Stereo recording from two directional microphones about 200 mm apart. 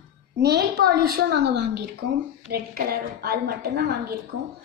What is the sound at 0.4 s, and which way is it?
A woman's voice, 55° right (ahead or behind).